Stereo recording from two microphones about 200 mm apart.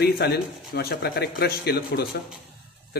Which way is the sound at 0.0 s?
55° left (ahead or behind).